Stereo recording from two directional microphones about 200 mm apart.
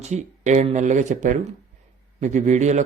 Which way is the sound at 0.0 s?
35° right (ahead or behind).